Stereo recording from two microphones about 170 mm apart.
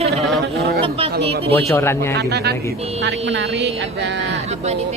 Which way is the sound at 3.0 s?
90° right.